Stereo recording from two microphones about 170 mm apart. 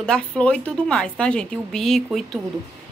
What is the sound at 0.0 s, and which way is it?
A woman's voice, 5° left (ahead or behind).